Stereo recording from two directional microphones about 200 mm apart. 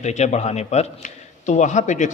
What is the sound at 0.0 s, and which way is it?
A man's voice, 35° left (ahead or behind).